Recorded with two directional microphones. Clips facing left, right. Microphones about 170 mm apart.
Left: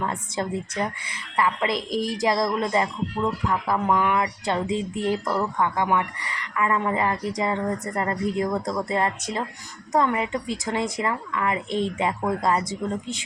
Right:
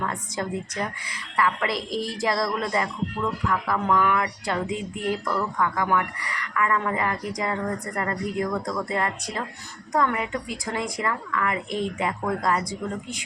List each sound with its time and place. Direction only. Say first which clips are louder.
0.0 s speech: left 2 dB; 25° left (ahead or behind)